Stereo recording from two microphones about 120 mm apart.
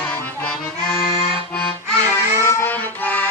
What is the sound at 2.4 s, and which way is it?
Music, 20° left (ahead or behind).